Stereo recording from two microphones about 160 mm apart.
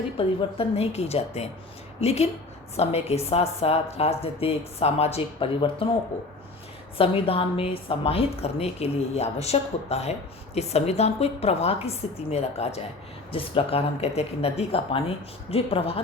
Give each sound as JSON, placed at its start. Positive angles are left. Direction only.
{"t": 0.2, "sound": "a woman's voice", "side_deg": 40}
{"t": 7.0, "sound": "a woman's voice", "side_deg": 35}